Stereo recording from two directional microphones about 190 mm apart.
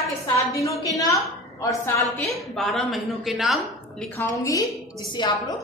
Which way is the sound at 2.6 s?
Centre (ahead or behind).